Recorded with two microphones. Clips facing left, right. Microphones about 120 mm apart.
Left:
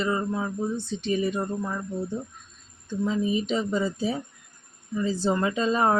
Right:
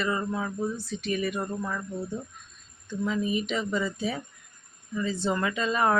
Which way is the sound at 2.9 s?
30° left (ahead or behind).